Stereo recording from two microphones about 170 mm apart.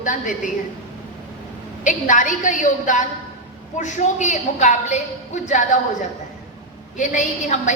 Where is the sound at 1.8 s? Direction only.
50° left (ahead or behind).